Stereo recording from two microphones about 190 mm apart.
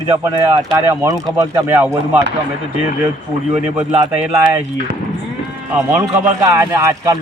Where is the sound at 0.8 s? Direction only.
15° right (ahead or behind).